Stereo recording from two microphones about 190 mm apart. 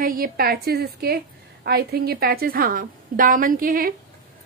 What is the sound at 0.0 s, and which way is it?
A woman's voice, 50° right (ahead or behind).